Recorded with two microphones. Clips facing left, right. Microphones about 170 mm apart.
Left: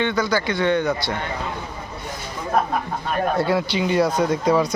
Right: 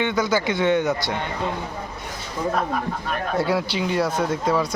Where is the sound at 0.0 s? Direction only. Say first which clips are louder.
Even; 15° right (ahead or behind).